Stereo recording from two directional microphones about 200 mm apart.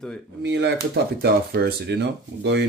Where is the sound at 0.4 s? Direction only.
60° right (ahead or behind).